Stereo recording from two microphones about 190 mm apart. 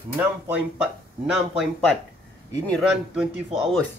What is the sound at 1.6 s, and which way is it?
Speech, 5° left (ahead or behind).